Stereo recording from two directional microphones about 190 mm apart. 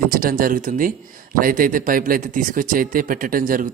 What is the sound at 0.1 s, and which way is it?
Speech, 50° right (ahead or behind).